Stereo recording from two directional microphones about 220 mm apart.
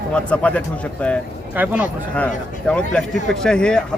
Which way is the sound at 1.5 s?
5° right (ahead or behind).